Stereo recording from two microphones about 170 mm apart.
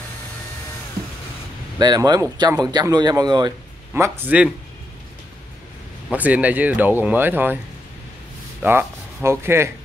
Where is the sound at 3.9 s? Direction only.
15° right (ahead or behind).